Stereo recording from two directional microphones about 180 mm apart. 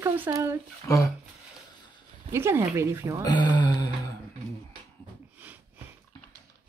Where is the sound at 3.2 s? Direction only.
25° left (ahead or behind).